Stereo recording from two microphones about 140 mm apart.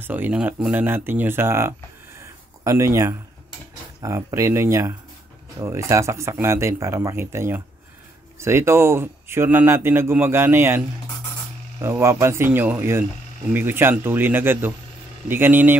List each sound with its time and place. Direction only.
0.0 s speech: 15° right (ahead or behind)
11.8 s speech: 20° right (ahead or behind)